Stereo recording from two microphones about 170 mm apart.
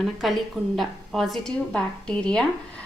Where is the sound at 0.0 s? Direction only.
Centre (ahead or behind).